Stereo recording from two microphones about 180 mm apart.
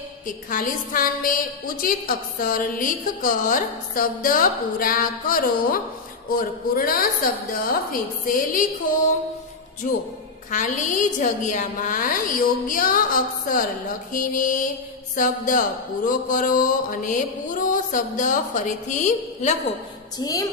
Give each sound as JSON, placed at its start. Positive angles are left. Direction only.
{"t": 0.5, "sound": "a woman's voice", "side_deg": 50}
{"t": 10.5, "sound": "a woman's voice", "side_deg": 45}
{"t": 20.2, "sound": "a woman's voice", "side_deg": 20}